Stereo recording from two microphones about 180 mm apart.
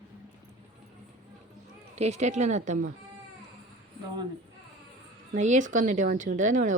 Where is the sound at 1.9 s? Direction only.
40° right (ahead or behind).